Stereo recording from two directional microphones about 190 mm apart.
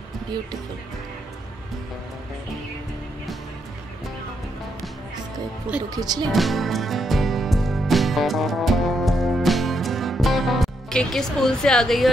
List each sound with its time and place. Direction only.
5.8 s speech: 20° right (ahead or behind)
6.2 s music: centre (ahead or behind)